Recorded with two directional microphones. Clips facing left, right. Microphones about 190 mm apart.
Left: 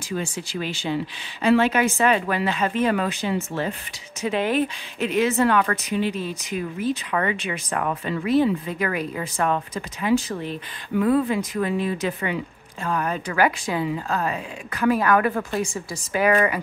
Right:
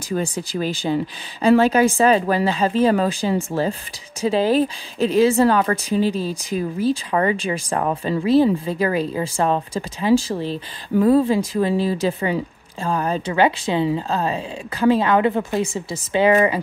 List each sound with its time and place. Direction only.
0.1 s speech: 40° right (ahead or behind)